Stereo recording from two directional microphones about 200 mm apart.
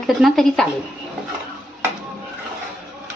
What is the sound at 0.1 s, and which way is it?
Speech, centre (ahead or behind).